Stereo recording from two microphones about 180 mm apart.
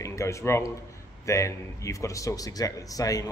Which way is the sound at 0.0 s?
15° left (ahead or behind).